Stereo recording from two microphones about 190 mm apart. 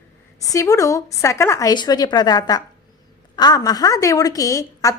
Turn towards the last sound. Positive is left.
turn(degrees=15)  # may be behind; listen again after turning